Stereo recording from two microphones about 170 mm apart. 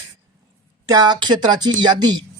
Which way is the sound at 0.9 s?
25° right (ahead or behind).